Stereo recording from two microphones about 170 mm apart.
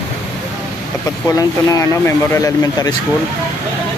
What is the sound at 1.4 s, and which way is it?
Speech, 15° left (ahead or behind).